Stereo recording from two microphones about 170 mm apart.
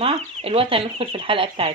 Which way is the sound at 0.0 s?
35° right (ahead or behind).